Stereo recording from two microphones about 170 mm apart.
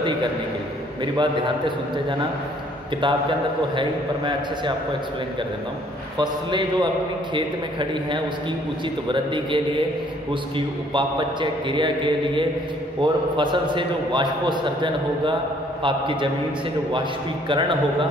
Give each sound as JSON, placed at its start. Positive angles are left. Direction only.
{"t": 1.0, "sound": "a man's voice", "side_deg": -25}
{"t": 3.0, "sound": "a man's voice", "side_deg": -30}
{"t": 6.1, "sound": "a man's voice", "side_deg": -25}
{"t": 10.9, "sound": "a man's voice", "side_deg": -30}
{"t": 17.5, "sound": "a man's voice", "side_deg": -30}